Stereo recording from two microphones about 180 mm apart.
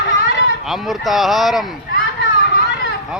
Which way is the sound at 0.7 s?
Centre (ahead or behind).